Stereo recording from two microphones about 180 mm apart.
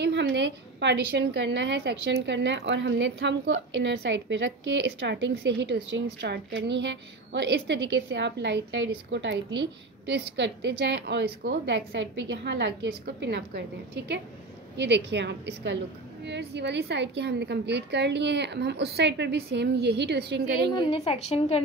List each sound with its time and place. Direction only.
0.0 s a woman's voice: 75° right (ahead or behind)
21.0 s a woman's voice: 35° left (ahead or behind)